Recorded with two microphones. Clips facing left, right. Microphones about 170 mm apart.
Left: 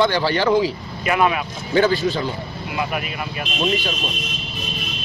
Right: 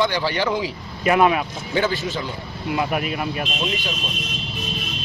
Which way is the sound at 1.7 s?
20° right (ahead or behind).